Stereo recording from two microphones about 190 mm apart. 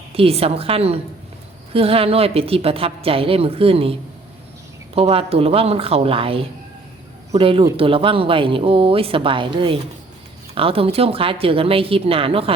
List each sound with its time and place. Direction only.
0.1 s a woman's voice: 30° right (ahead or behind)
4.9 s a woman's voice: 30° right (ahead or behind)